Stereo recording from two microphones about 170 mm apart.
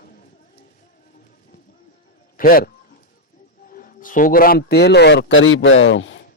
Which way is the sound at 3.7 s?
55° left (ahead or behind).